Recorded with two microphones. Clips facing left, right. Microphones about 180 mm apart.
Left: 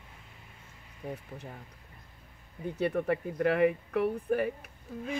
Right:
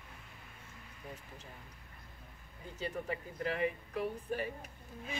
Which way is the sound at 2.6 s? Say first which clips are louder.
Left 10 dB; 65° left (ahead or behind).